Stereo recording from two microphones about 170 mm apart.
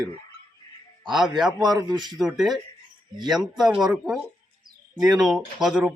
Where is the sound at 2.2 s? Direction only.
Centre (ahead or behind).